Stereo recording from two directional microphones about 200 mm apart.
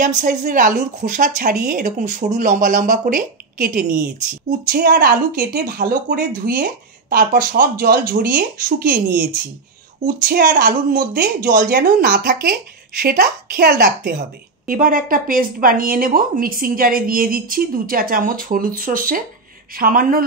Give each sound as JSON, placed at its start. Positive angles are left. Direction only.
{"t": 0.2, "sound": "a woman's voice", "side_deg": -40}